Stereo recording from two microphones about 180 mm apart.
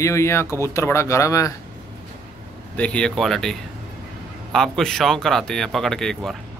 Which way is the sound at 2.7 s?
5° left (ahead or behind).